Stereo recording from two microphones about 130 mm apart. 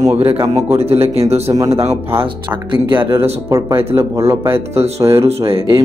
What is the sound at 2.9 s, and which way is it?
Speech, 15° right (ahead or behind).